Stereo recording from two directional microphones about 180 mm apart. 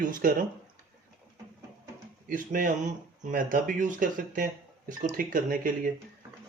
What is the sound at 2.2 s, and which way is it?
Speech, 50° right (ahead or behind).